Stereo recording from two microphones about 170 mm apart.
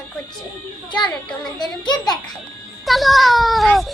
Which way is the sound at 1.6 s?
25° left (ahead or behind).